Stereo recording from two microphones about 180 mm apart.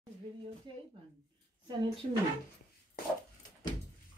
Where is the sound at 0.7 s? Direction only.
25° right (ahead or behind).